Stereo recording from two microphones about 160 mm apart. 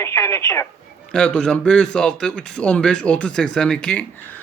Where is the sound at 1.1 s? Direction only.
5° left (ahead or behind).